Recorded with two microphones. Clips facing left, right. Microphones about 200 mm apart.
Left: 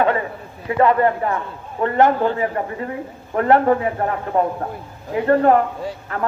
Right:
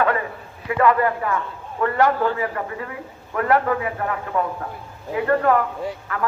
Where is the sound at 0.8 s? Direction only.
25° left (ahead or behind).